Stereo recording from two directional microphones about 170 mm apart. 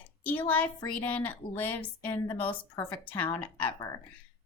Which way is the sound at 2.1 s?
20° left (ahead or behind).